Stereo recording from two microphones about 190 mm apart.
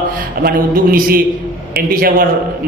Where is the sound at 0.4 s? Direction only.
50° right (ahead or behind).